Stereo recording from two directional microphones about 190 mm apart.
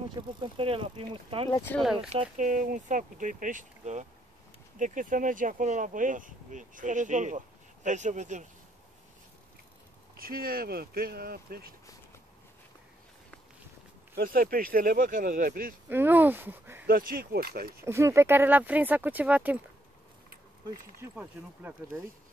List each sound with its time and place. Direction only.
0.1 s speech: 25° right (ahead or behind)
1.5 s speech: 10° left (ahead or behind)
1.8 s speech: 5° right (ahead or behind)
2.3 s speech: 40° right (ahead or behind)
10.1 s speech: 50° right (ahead or behind)
14.1 s speech: 50° right (ahead or behind)
15.9 s speech: 10° right (ahead or behind)
16.8 s speech: 50° right (ahead or behind)
17.8 s speech: 15° right (ahead or behind)
21.0 s speech: 10° right (ahead or behind)